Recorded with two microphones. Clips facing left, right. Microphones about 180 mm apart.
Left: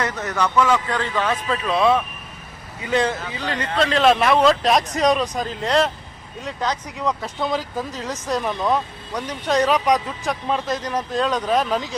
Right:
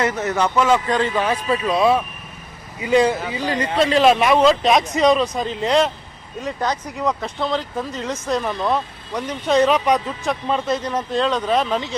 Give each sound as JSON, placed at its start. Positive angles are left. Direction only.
{"t": 0.0, "sound": "a man's voice", "side_deg": -20}
{"t": 7.2, "sound": "speech", "side_deg": 5}